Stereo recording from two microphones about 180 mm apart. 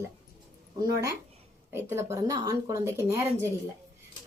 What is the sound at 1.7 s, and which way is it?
A woman's voice, 15° right (ahead or behind).